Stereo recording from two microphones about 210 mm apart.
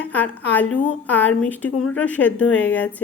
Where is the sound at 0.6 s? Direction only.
90° left.